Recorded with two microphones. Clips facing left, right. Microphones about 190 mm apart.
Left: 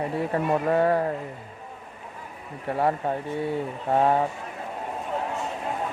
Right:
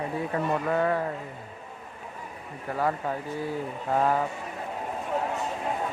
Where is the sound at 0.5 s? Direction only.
35° left (ahead or behind).